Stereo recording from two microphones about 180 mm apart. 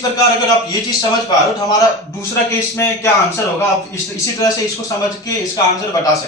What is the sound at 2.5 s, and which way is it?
A man's voice, 15° left (ahead or behind).